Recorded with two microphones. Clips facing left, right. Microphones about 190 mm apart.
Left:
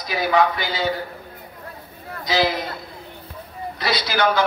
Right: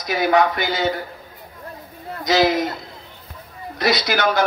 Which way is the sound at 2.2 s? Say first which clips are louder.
Right 4 dB; 45° right (ahead or behind).